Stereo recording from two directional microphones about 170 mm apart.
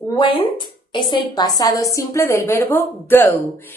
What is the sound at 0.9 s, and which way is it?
A woman's voice, 25° left (ahead or behind).